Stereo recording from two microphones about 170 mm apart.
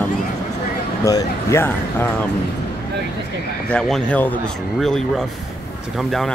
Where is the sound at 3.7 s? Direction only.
5° left (ahead or behind).